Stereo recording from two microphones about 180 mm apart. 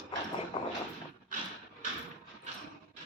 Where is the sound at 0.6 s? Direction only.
30° left (ahead or behind).